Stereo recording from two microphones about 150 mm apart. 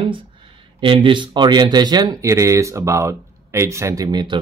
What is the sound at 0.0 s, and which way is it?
Speech, 35° right (ahead or behind).